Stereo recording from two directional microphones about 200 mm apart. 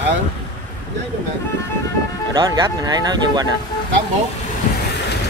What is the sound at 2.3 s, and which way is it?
Speech, 20° right (ahead or behind).